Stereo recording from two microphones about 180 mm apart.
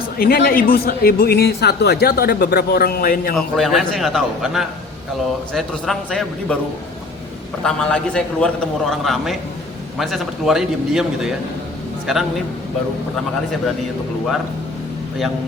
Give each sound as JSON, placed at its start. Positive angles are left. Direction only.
{"t": 0.2, "sound": "speech", "side_deg": 55}
{"t": 3.3, "sound": "a man's voice", "side_deg": 0}
{"t": 7.6, "sound": "a man's voice", "side_deg": 5}